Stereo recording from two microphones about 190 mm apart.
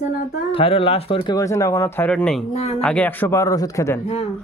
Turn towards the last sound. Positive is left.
turn(degrees=30)  # may be behind; listen again after turning